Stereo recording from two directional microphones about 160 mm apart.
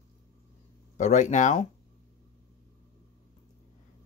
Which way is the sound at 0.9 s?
50° left (ahead or behind).